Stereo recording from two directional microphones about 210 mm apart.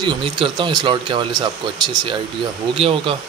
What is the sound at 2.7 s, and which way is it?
Speech, 25° right (ahead or behind).